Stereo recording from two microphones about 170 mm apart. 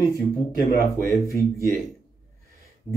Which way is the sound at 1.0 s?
15° left (ahead or behind).